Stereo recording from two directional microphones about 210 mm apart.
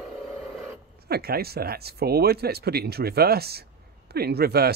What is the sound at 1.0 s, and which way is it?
Speech, 45° right (ahead or behind).